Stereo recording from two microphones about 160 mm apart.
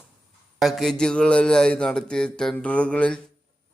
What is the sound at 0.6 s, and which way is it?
Speech, centre (ahead or behind).